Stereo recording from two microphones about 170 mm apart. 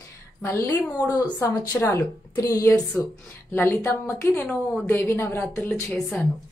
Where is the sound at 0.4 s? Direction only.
15° left (ahead or behind).